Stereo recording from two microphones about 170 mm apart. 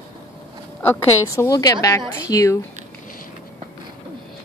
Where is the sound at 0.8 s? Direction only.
15° left (ahead or behind).